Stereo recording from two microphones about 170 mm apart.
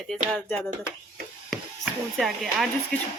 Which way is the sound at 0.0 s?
Centre (ahead or behind).